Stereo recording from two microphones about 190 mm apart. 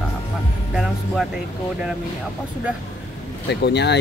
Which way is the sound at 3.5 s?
60° left (ahead or behind).